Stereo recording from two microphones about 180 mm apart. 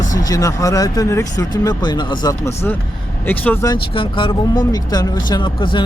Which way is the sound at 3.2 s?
10° left (ahead or behind).